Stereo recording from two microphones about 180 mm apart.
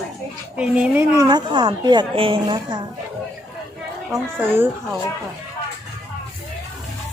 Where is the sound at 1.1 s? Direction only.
20° right (ahead or behind).